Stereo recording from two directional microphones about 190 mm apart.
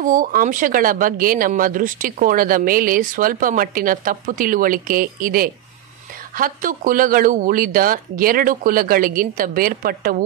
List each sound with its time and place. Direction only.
0.0 s speech: 45° right (ahead or behind)